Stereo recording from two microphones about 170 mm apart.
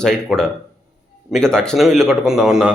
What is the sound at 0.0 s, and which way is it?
A man's voice, 5° left (ahead or behind).